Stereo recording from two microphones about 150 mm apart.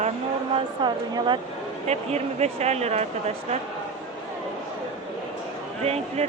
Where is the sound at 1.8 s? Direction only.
45° right (ahead or behind).